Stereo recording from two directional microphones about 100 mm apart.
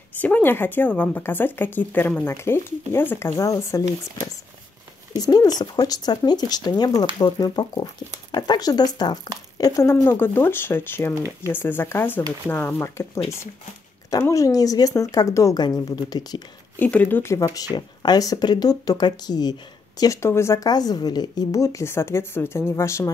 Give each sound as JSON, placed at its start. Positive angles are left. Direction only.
{"t": 0.2, "sound": "speech", "side_deg": 15}
{"t": 5.2, "sound": "speech", "side_deg": 40}
{"t": 9.6, "sound": "speech", "side_deg": 30}
{"t": 10.0, "sound": "speech", "side_deg": 20}
{"t": 14.2, "sound": "speech", "side_deg": 35}
{"t": 16.1, "sound": "speech", "side_deg": 45}
{"t": 16.7, "sound": "speech", "side_deg": 20}
{"t": 20.0, "sound": "speech", "side_deg": 30}
{"t": 20.6, "sound": "speech", "side_deg": 40}